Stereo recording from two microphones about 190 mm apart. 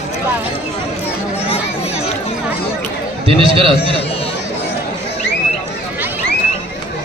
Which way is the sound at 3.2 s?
30° right (ahead or behind).